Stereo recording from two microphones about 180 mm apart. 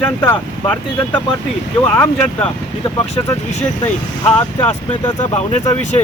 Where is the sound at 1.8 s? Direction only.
10° left (ahead or behind).